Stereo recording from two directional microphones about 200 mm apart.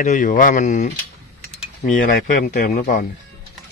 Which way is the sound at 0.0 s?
40° left (ahead or behind).